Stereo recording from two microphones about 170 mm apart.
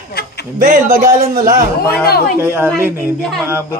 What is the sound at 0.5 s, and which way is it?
Snicker, 50° right (ahead or behind).